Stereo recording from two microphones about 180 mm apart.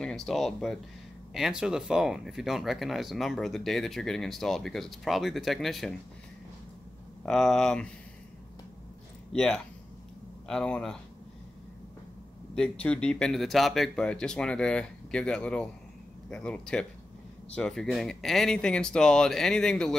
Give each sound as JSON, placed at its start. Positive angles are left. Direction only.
{"t": 0.0, "sound": "speech", "side_deg": 0}
{"t": 7.2, "sound": "speech", "side_deg": 0}
{"t": 9.3, "sound": "speech", "side_deg": 5}
{"t": 12.5, "sound": "speech", "side_deg": 5}